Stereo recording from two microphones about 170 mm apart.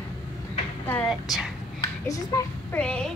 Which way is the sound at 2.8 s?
5° left (ahead or behind).